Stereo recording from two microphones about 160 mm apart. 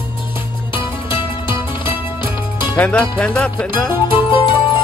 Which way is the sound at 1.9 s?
15° right (ahead or behind).